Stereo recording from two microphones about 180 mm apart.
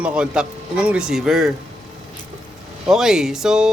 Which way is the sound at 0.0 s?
5° right (ahead or behind).